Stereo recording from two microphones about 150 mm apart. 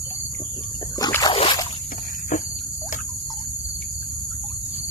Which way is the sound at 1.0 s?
25° left (ahead or behind).